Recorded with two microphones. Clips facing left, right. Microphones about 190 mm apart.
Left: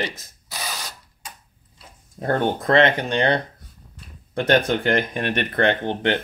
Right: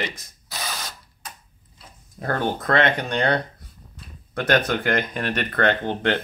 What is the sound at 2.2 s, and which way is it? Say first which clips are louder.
Speech: left 3 dB; 25° left (ahead or behind).